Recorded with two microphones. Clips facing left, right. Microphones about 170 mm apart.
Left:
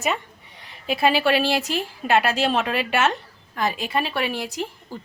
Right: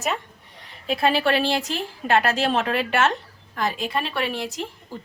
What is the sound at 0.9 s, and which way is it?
Speech, 5° left (ahead or behind).